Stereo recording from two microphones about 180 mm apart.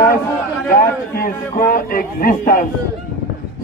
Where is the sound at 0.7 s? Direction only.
50° left (ahead or behind).